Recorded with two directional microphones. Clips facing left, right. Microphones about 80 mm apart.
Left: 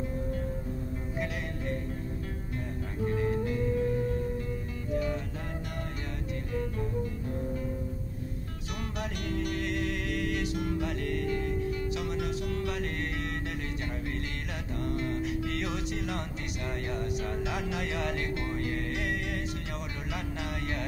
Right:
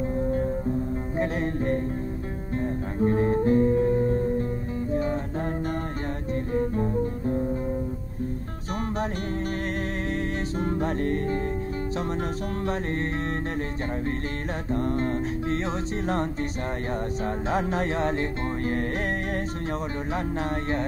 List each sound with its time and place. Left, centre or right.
0.2 s music: right
6.5 s music: right
10.5 s music: right
14.7 s music: right
17.5 s music: right